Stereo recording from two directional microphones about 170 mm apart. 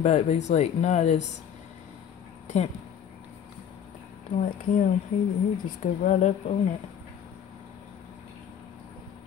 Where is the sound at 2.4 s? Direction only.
40° left (ahead or behind).